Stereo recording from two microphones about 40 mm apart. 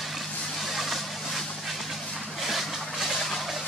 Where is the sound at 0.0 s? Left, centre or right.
Centre.